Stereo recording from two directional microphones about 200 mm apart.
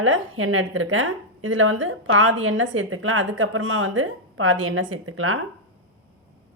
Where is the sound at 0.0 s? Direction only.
85° right.